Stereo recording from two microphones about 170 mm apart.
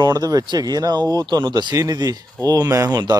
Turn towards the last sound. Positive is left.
turn(degrees=-20)  # may be behind; listen again after turning